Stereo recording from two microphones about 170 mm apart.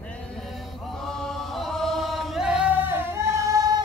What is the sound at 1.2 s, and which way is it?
Chant, centre (ahead or behind).